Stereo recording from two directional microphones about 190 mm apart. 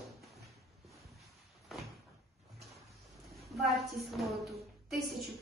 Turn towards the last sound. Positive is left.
turn(degrees=0)  # may be behind; listen again after turning